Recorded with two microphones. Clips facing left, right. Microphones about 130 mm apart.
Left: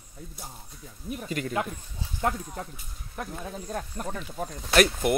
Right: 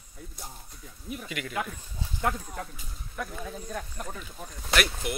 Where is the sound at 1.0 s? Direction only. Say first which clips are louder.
Left 5 dB; 40° left (ahead or behind).